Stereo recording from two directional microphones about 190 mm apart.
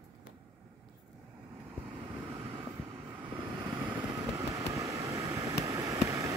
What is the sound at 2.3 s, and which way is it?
Vehicle, 25° right (ahead or behind).